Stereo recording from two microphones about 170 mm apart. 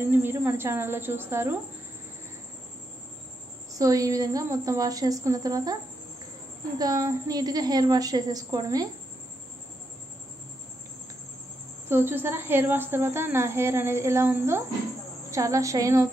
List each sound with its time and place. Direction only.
0.0 s a woman's voice: 15° right (ahead or behind)
3.7 s a woman's voice: 20° right (ahead or behind)
6.8 s a woman's voice: 20° right (ahead or behind)
11.9 s a woman's voice: 15° right (ahead or behind)